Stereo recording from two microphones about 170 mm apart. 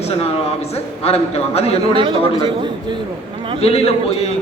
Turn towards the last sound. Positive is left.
turn(degrees=35)  # may be behind; listen again after turning